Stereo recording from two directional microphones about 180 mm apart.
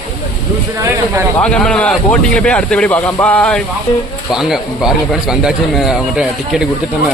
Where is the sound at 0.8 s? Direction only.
15° right (ahead or behind).